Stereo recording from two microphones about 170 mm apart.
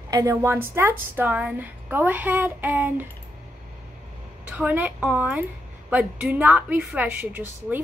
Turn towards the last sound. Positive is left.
turn(degrees=-10)  # may be behind; listen again after turning